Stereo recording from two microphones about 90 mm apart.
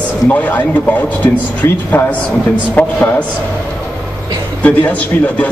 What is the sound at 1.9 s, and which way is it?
A man's voice, 20° left (ahead or behind).